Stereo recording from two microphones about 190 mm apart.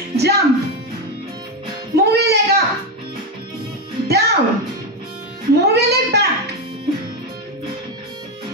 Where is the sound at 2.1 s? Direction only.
60° right (ahead or behind).